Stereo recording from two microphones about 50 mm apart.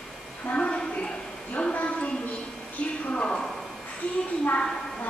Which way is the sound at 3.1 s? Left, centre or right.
Left.